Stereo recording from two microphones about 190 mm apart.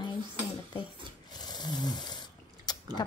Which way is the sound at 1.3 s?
20° left (ahead or behind).